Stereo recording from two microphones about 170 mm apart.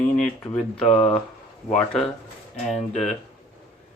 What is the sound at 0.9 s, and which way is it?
Speech, 35° left (ahead or behind).